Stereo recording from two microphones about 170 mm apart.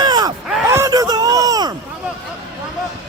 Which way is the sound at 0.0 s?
25° right (ahead or behind).